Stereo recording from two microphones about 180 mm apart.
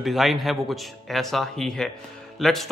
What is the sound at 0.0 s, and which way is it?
A man's voice, centre (ahead or behind).